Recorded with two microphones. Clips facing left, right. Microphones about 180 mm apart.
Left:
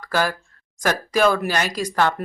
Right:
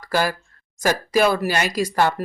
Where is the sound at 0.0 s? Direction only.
10° right (ahead or behind).